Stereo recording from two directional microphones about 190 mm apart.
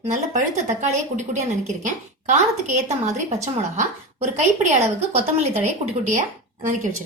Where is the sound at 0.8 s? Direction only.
35° right (ahead or behind).